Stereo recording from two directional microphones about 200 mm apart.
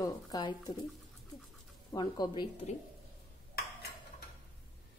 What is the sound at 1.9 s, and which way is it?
Speech, 20° left (ahead or behind).